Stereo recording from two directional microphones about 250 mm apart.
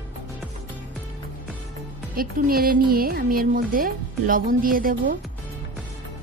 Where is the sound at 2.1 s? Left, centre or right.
Right.